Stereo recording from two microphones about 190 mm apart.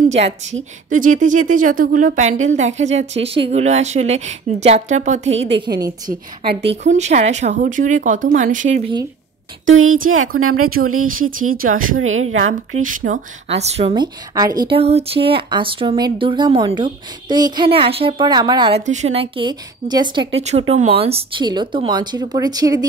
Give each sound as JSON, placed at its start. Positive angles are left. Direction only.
{"t": 0.0, "sound": "speech", "side_deg": -35}
{"t": 5.6, "sound": "a woman's voice", "side_deg": -20}
{"t": 6.7, "sound": "speech", "side_deg": -35}
{"t": 9.7, "sound": "a woman's voice", "side_deg": -90}
{"t": 12.8, "sound": "a woman's voice", "side_deg": -45}
{"t": 18.8, "sound": "a woman's voice", "side_deg": -40}